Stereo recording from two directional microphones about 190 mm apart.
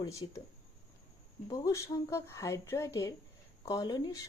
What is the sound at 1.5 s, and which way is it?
Speech, 15° left (ahead or behind).